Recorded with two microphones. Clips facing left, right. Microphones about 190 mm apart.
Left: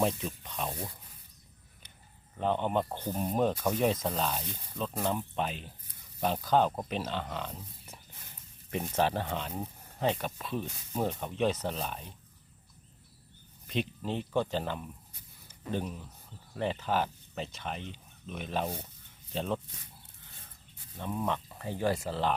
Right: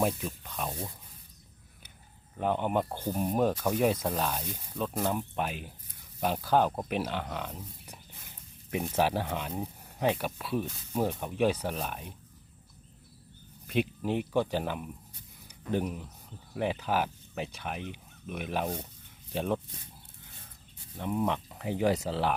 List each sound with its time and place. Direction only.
0.0 s speech: 5° right (ahead or behind)
2.4 s speech: 10° right (ahead or behind)
13.7 s speech: 10° right (ahead or behind)
21.0 s speech: 15° right (ahead or behind)